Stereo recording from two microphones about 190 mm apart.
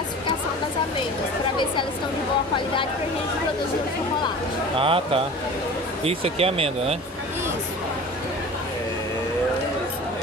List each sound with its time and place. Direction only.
4.7 s speech: 30° right (ahead or behind)